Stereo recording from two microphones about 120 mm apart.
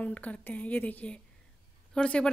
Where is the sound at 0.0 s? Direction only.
10° left (ahead or behind).